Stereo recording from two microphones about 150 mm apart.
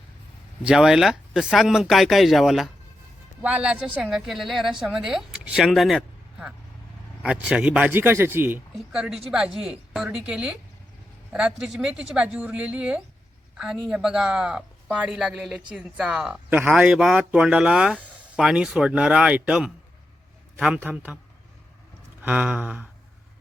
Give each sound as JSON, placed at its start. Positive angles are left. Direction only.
{"t": 0.6, "sound": "a woman's voice", "side_deg": -5}
{"t": 8.9, "sound": "a woman's voice", "side_deg": -5}
{"t": 22.2, "sound": "a woman's voice", "side_deg": -10}